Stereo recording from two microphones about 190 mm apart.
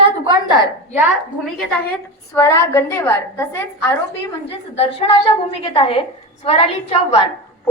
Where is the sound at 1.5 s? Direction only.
10° left (ahead or behind).